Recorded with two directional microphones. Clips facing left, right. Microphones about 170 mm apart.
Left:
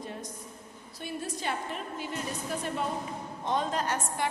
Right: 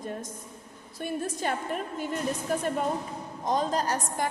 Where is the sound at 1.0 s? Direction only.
50° right (ahead or behind).